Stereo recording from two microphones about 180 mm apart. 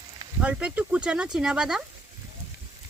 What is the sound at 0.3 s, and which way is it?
Speech, 5° right (ahead or behind).